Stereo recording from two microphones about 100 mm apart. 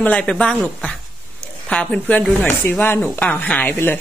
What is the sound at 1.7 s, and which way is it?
Speech, 10° left (ahead or behind).